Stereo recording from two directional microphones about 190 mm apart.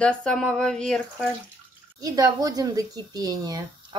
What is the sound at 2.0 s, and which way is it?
Speech, 20° right (ahead or behind).